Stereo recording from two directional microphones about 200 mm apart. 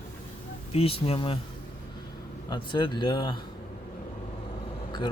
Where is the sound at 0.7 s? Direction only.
30° left (ahead or behind).